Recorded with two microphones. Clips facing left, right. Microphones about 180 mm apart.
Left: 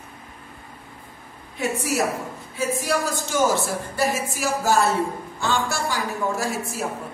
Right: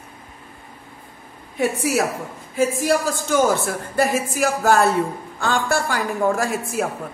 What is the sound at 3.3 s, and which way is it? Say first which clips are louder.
A woman's voice: right 3 dB; 60° right (ahead or behind).